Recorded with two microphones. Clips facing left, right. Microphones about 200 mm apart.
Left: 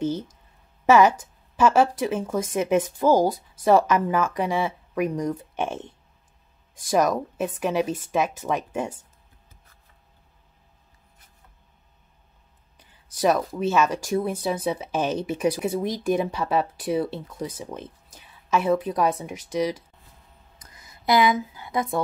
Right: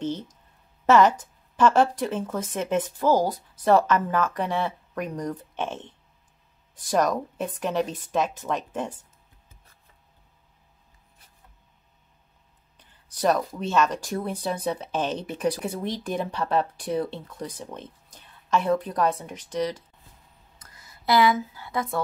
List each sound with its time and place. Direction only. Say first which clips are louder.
0.0 s speech: left 3 dB; 10° left (ahead or behind)
12.7 s speech: left 2 dB; 10° left (ahead or behind)
20.5 s a sound: left 1 dB; 15° left (ahead or behind)